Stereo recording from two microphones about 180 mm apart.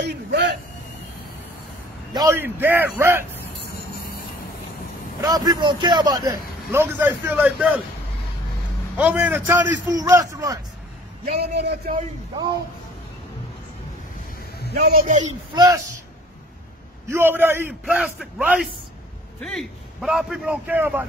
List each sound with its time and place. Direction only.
0.0 s a sound: 70° right (ahead or behind)
2.1 s a man's voice: 15° right (ahead or behind)
5.2 s a man's voice: 20° right (ahead or behind)
8.9 s a man's voice: 10° right (ahead or behind)
11.2 s a man's voice: 65° right (ahead or behind)
14.7 s a man's voice: 55° right (ahead or behind)
15.5 s a man's voice: 20° right (ahead or behind)
17.1 s a man's voice: 10° right (ahead or behind)